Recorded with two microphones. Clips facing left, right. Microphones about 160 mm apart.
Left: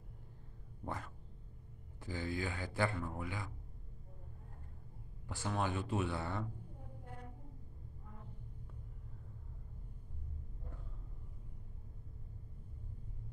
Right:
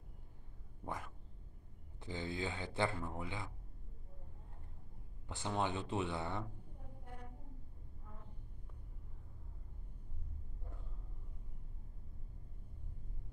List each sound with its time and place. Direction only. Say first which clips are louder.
0.8 s a sound: left 1 dB; 15° right (ahead or behind)
2.0 s a man's voice: left 1 dB; 20° right (ahead or behind)
5.3 s a man's voice: even; 20° right (ahead or behind)